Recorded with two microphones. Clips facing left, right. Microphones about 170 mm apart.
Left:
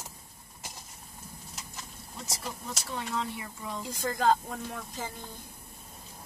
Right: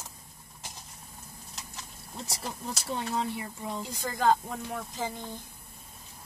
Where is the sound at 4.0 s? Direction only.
Centre (ahead or behind).